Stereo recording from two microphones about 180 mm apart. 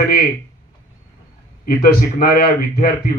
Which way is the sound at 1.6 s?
55° left (ahead or behind).